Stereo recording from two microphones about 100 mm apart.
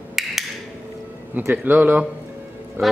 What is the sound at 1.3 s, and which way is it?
Speech, 15° right (ahead or behind).